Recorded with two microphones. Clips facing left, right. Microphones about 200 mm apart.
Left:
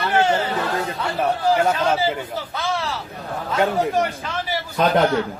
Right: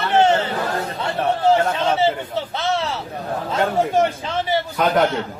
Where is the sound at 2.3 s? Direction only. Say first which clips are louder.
Right 3 dB; 25° right (ahead or behind).